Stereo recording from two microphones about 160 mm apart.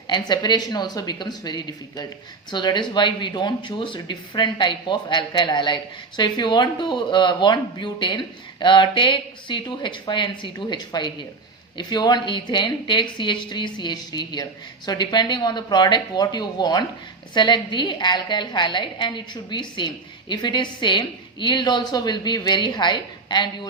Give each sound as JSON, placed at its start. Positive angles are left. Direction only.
{"t": 0.1, "sound": "speech", "side_deg": 25}